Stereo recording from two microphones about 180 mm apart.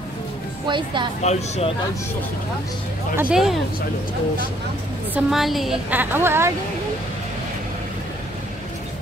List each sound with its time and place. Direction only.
0.7 s speech: 25° right (ahead or behind)
1.2 s speech: 35° left (ahead or behind)
3.2 s speech: 5° right (ahead or behind)
5.1 s a woman's voice: centre (ahead or behind)